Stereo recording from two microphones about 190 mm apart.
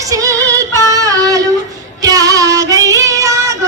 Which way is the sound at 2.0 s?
20° right (ahead or behind).